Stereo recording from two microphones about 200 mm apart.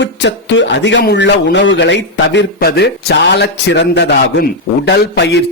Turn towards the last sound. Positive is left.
turn(degrees=55)  # may be behind; listen again after turning